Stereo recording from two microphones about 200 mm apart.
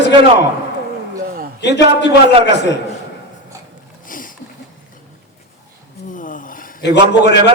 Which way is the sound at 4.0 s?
45° left (ahead or behind).